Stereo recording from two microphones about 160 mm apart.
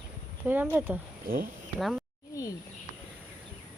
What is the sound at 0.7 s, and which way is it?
Speech, 15° right (ahead or behind).